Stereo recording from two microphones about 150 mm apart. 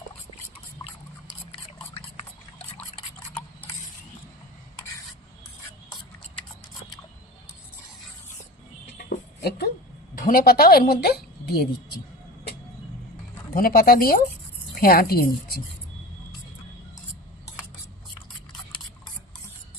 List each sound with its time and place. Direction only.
9.0 s a sound: 90° left
10.2 s a woman's voice: 80° left
13.5 s a woman's voice: 75° left (ahead or behind)